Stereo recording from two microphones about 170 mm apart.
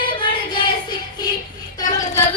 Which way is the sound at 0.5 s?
25° left (ahead or behind).